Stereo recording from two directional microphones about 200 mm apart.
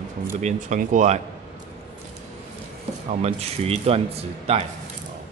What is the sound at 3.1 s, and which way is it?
Speech, 30° right (ahead or behind).